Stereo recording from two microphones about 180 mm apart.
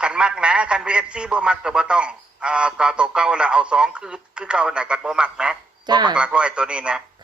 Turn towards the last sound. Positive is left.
turn(degrees=-5)  # may be behind; listen again after turning